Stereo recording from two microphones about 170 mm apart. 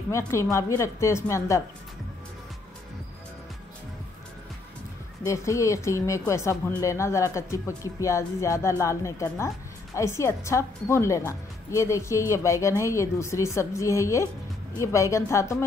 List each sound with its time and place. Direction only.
0.1 s speech: 15° left (ahead or behind)
5.2 s speech: 20° left (ahead or behind)